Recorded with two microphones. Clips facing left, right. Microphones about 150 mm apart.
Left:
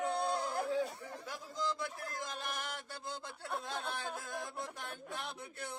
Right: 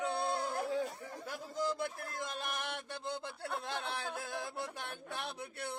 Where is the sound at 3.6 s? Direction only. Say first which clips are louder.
Right 1 dB; 70° right (ahead or behind).